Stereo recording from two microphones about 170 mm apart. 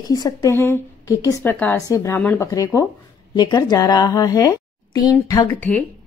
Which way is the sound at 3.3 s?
25° left (ahead or behind).